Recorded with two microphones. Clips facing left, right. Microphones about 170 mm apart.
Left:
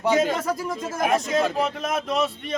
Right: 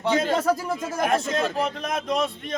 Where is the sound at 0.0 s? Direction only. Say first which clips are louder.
Even; 10° left (ahead or behind).